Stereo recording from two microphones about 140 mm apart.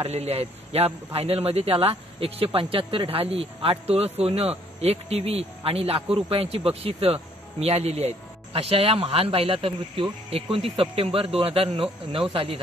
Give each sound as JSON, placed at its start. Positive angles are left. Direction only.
{"t": 0.0, "sound": "speech", "side_deg": -50}